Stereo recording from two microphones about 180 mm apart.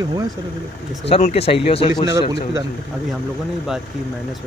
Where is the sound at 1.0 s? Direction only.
35° left (ahead or behind).